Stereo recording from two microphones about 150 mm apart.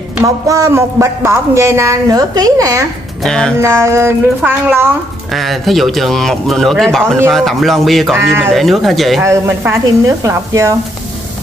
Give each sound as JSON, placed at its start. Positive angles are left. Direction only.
{"t": 0.5, "sound": "a woman's voice", "side_deg": -20}
{"t": 3.2, "sound": "speech", "side_deg": 5}
{"t": 3.6, "sound": "speech", "side_deg": -15}
{"t": 5.3, "sound": "a man's voice", "side_deg": 0}
{"t": 9.2, "sound": "a woman's voice", "side_deg": -20}